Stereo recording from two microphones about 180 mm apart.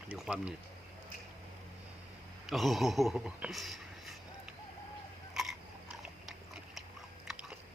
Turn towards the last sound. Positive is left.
turn(degrees=-5)  # may be behind; listen again after turning